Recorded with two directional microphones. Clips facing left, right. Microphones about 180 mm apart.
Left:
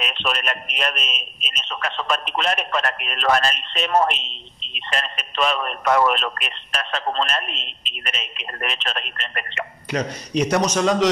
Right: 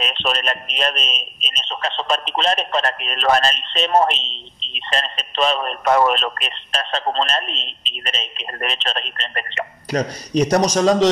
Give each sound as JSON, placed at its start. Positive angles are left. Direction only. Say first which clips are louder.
{"t": 0.0, "sound": "a man's voice", "louder": "right 3 dB", "side_deg": -30}